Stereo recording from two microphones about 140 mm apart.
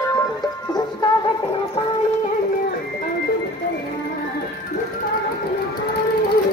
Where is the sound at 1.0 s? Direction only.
35° left (ahead or behind).